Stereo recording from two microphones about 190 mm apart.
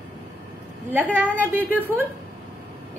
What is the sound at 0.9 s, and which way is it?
A woman's voice, 10° right (ahead or behind).